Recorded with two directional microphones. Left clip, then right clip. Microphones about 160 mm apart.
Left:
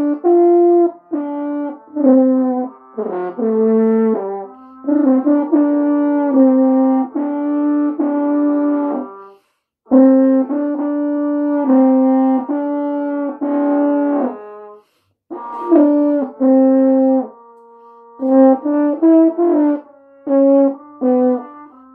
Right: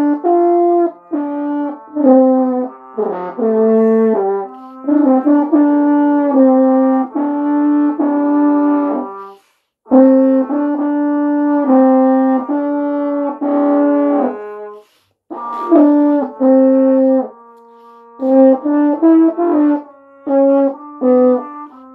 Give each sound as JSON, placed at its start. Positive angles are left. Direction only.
{"t": 0.0, "sound": "french horn", "side_deg": -20}
{"t": 3.1, "sound": "brass instrument", "side_deg": -20}
{"t": 4.8, "sound": "french horn", "side_deg": -20}
{"t": 9.8, "sound": "brass instrument", "side_deg": -15}
{"t": 10.4, "sound": "french horn", "side_deg": -20}
{"t": 15.7, "sound": "french horn", "side_deg": -20}
{"t": 18.2, "sound": "french horn", "side_deg": -20}